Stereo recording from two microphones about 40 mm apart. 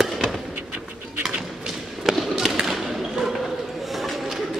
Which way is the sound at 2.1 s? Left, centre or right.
Centre.